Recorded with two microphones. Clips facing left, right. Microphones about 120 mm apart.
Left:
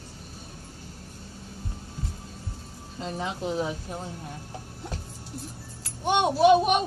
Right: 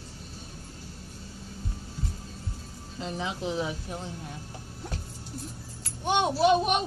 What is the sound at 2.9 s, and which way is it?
Speech, 45° left (ahead or behind).